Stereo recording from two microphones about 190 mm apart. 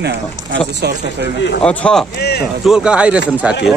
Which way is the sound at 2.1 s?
60° left (ahead or behind).